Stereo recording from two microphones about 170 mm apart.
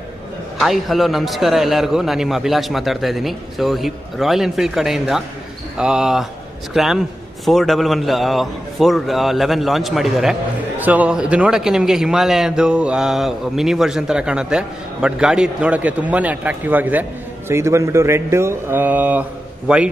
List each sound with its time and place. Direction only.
0.6 s a man's voice: centre (ahead or behind)